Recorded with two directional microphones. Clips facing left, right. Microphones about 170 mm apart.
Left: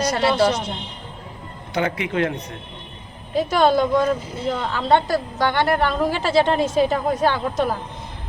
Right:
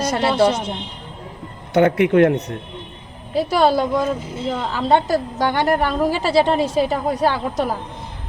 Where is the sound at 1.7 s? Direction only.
60° right (ahead or behind).